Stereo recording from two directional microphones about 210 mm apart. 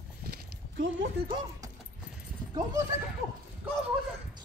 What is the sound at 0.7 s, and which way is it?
Speech, 60° right (ahead or behind).